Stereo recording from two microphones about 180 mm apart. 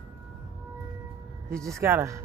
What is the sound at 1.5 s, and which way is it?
Speech, 15° right (ahead or behind).